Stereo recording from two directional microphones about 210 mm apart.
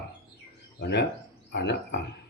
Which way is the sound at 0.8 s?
55° left (ahead or behind).